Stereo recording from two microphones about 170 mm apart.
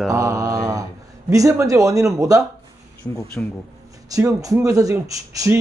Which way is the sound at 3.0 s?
20° left (ahead or behind).